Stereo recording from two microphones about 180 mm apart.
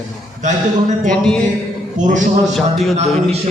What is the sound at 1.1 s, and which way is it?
Speech, 5° left (ahead or behind).